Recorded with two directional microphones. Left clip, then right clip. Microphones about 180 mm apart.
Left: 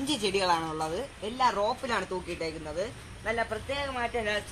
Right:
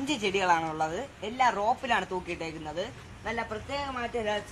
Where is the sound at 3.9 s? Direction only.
65° right (ahead or behind).